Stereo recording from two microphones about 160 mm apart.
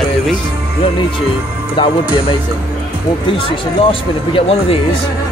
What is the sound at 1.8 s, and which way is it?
Speech, 30° left (ahead or behind).